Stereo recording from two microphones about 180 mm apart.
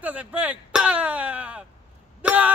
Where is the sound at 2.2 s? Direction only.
5° right (ahead or behind).